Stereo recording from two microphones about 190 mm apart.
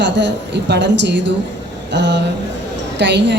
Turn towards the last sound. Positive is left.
turn(degrees=-65)  # may be behind; listen again after turning